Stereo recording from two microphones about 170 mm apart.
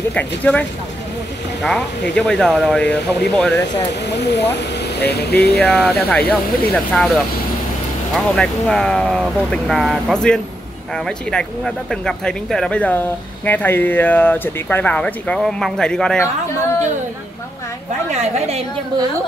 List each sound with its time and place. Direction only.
0.1 s speech: 10° left (ahead or behind)
4.0 s speech: 90° left
4.6 s vehicle: 80° left
5.1 s speech: 75° left (ahead or behind)
5.6 s speech: 5° left (ahead or behind)
18.1 s a woman's voice: 40° right (ahead or behind)